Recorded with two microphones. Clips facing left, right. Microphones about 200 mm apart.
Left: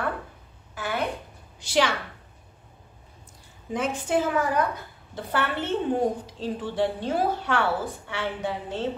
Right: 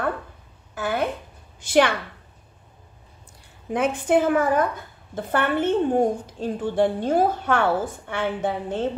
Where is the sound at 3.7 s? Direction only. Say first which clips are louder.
Right 5 dB; 60° right (ahead or behind).